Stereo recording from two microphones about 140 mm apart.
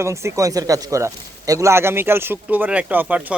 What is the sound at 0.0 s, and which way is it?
Speech, 20° right (ahead or behind).